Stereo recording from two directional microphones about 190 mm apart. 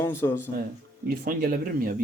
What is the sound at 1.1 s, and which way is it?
Speech, 50° right (ahead or behind).